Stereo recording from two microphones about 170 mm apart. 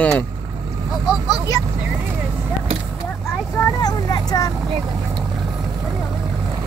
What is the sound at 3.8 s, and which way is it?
Vehicle, 25° left (ahead or behind).